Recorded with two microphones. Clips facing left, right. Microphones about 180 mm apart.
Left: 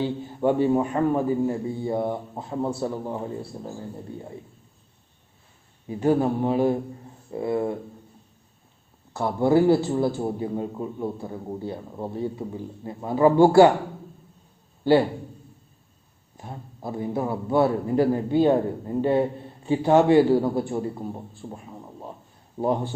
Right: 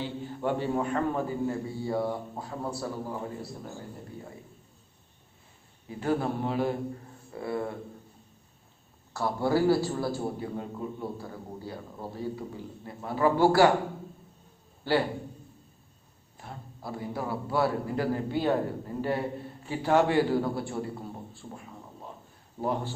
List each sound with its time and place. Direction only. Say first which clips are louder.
0.3 s a man's voice: left 9 dB; 15° left (ahead or behind)
6.0 s a man's voice: left 7 dB; 15° left (ahead or behind)
9.1 s a man's voice: left 6 dB; 20° left (ahead or behind)
16.4 s a man's voice: left 6 dB; 20° left (ahead or behind)
22.6 s a man's voice: left 6 dB; 20° left (ahead or behind)